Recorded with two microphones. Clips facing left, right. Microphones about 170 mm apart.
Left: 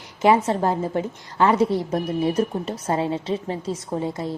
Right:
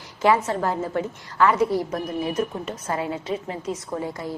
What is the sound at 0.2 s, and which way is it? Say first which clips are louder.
A woman's voice: left 2 dB; 25° left (ahead or behind).